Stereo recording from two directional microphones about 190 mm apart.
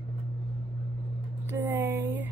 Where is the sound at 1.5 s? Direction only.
10° right (ahead or behind).